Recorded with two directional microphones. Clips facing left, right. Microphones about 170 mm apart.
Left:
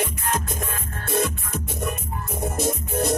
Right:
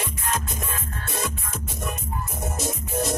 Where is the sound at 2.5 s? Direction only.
55° left (ahead or behind).